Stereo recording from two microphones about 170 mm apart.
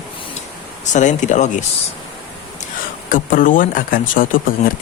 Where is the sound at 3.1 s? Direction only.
50° left (ahead or behind).